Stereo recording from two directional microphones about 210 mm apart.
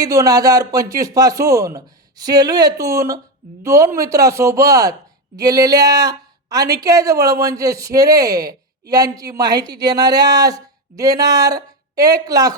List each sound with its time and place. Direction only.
0.0 s a woman's voice: 15° right (ahead or behind)